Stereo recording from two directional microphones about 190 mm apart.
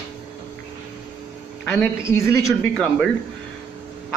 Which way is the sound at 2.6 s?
5° left (ahead or behind).